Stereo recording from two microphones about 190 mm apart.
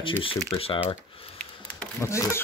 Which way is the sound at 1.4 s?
10° left (ahead or behind).